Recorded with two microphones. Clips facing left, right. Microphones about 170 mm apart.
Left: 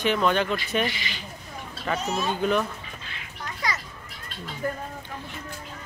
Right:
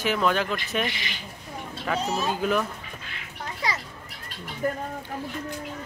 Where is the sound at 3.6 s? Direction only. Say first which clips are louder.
Right 1 dB; 30° right (ahead or behind).